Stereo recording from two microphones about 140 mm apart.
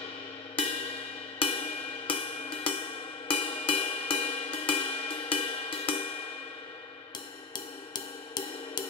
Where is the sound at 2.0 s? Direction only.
40° left (ahead or behind).